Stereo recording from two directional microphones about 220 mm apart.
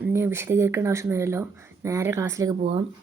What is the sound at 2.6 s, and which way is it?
Speech, 30° right (ahead or behind).